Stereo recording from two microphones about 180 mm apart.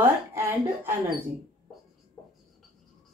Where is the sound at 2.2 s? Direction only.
15° left (ahead or behind).